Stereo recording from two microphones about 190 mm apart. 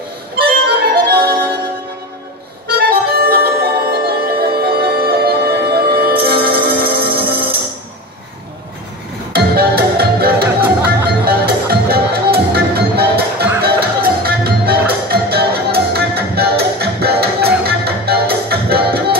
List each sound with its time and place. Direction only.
0.4 s music: 55° right (ahead or behind)
2.9 s music: 55° right (ahead or behind)
9.3 s music: 55° right (ahead or behind)